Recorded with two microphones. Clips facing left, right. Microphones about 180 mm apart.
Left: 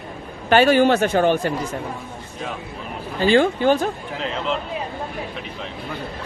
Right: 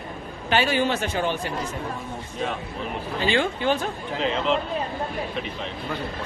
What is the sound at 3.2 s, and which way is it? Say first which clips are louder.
Speech: left 8 dB; 40° left (ahead or behind).